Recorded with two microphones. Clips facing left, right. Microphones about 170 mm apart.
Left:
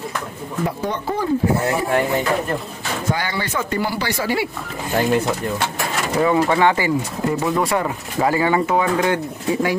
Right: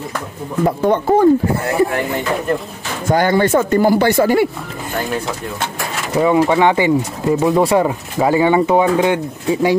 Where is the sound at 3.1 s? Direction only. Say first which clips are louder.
Right 14 dB; 50° right (ahead or behind).